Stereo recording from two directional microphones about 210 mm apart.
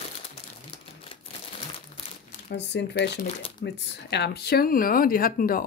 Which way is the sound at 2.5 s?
50° left (ahead or behind).